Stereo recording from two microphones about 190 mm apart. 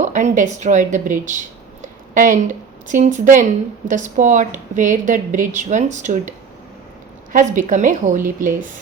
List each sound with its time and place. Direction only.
0.0 s a woman's voice: 40° right (ahead or behind)
7.3 s a woman's voice: 45° right (ahead or behind)